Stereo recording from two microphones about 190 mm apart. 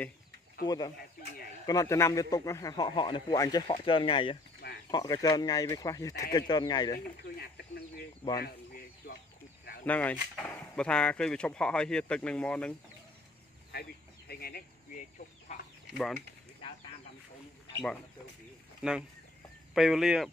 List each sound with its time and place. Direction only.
0.7 s a man's voice: 20° left (ahead or behind)
7.3 s chicken: 60° left (ahead or behind)
8.4 s a sound: 55° left (ahead or behind)
9.8 s speech: 10° left (ahead or behind)
13.7 s chicken: 55° left (ahead or behind)
18.8 s speech: 5° right (ahead or behind)